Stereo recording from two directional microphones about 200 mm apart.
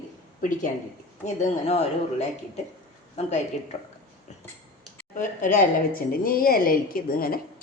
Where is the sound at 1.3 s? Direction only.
35° left (ahead or behind).